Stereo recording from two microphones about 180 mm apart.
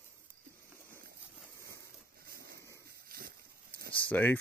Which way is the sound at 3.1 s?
55° right (ahead or behind).